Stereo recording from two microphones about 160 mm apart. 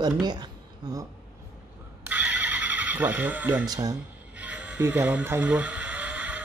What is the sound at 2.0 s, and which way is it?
Neigh, 10° right (ahead or behind).